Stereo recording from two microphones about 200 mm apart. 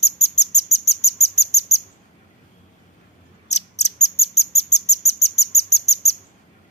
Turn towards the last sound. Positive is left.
turn(degrees=30)  # may be behind; listen again after turning